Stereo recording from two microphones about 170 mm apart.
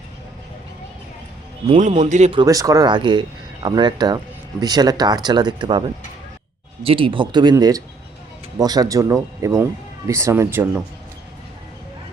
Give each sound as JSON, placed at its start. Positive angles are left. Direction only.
{"t": 1.7, "sound": "a man's voice", "side_deg": -40}
{"t": 2.3, "sound": "speech", "side_deg": -25}